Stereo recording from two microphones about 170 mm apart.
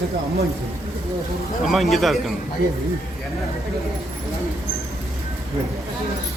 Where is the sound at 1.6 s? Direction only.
Centre (ahead or behind).